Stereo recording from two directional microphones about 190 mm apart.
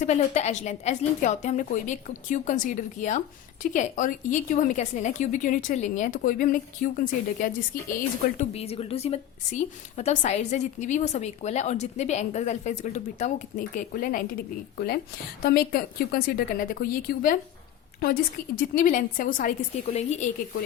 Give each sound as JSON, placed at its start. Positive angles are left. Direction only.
{"t": 0.0, "sound": "a woman's voice", "side_deg": 35}
{"t": 8.5, "sound": "a woman's voice", "side_deg": 30}
{"t": 15.4, "sound": "a woman's voice", "side_deg": 50}